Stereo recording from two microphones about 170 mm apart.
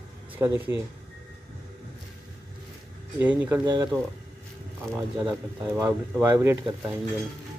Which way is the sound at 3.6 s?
25° right (ahead or behind).